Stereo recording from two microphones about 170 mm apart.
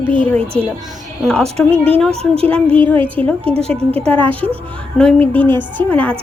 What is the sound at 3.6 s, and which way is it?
Speech, 35° right (ahead or behind).